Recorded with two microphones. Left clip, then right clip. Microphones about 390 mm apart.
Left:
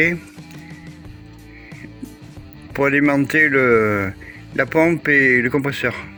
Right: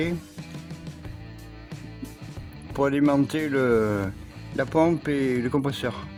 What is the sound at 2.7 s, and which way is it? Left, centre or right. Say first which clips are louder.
Speech: left 6 dB; right.